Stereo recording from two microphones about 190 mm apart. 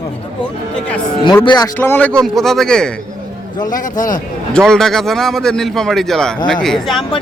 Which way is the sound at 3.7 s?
45° left (ahead or behind).